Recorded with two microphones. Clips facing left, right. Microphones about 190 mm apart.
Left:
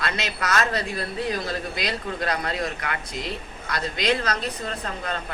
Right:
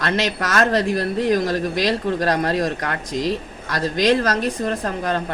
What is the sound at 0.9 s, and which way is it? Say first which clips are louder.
Speech: right 9 dB; 80° right.